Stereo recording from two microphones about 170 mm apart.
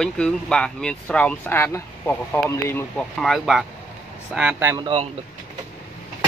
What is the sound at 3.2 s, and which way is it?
Speech, centre (ahead or behind).